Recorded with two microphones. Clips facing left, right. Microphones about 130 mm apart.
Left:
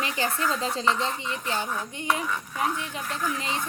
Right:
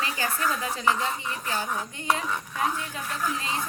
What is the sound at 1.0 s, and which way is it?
Speech, 15° right (ahead or behind).